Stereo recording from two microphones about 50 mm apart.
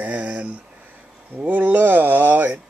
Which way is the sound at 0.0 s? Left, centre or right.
Right.